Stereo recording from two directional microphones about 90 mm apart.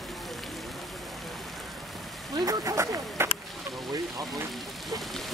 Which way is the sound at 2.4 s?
40° right (ahead or behind).